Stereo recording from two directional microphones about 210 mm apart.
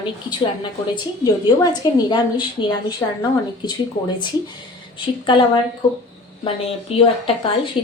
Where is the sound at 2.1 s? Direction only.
20° left (ahead or behind).